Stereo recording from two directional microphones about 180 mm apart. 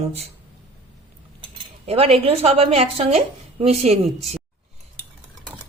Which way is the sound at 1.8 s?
30° right (ahead or behind).